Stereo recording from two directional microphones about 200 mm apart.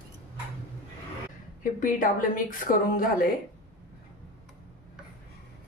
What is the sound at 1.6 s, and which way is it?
A woman's voice, 40° left (ahead or behind).